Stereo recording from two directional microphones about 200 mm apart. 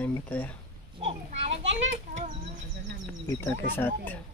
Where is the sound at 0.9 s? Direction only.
35° right (ahead or behind).